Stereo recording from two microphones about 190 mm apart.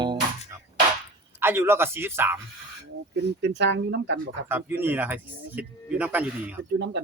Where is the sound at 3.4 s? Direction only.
65° right (ahead or behind).